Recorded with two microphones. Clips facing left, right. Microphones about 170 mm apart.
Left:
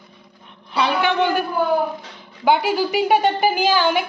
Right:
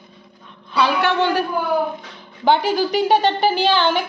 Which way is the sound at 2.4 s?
10° left (ahead or behind).